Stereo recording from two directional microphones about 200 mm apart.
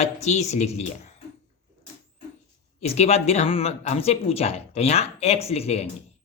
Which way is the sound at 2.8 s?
30° left (ahead or behind).